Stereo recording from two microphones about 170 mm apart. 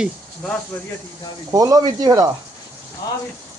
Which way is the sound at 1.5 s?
20° right (ahead or behind).